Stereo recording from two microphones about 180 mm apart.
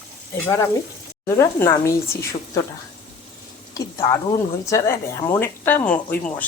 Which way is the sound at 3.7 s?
20° left (ahead or behind).